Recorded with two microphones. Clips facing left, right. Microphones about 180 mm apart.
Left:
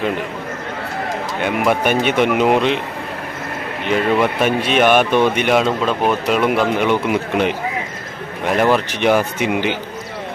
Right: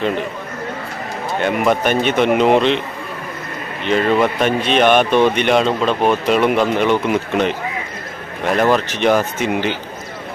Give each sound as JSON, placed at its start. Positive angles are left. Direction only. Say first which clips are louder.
{"t": 1.4, "sound": "speech", "louder": "right 1 dB", "side_deg": 5}
{"t": 3.8, "sound": "speech", "louder": "right 1 dB", "side_deg": 10}